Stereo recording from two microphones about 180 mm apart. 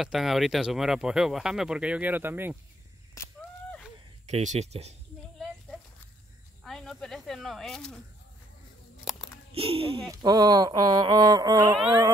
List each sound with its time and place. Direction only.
0.0 s speech: centre (ahead or behind)
3.2 s a sound: 15° left (ahead or behind)
4.3 s speech: 40° right (ahead or behind)
6.6 s snake: centre (ahead or behind)
9.1 s a sound: centre (ahead or behind)
9.5 s speech: 30° right (ahead or behind)